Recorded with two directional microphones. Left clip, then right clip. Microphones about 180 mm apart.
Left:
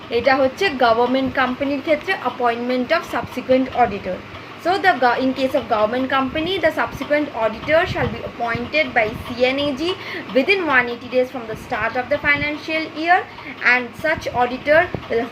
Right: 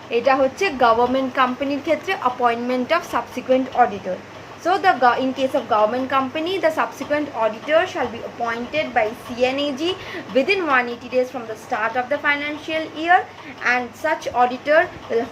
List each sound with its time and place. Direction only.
0.1 s a woman's voice: 20° right (ahead or behind)
7.7 s a woman's voice: 15° right (ahead or behind)